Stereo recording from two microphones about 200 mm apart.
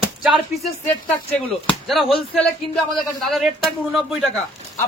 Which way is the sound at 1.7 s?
Centre (ahead or behind).